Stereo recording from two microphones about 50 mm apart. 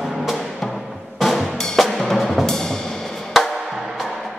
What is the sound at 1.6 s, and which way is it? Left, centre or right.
Drum, centre.